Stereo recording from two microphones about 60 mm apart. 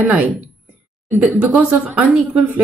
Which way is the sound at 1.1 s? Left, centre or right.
Right.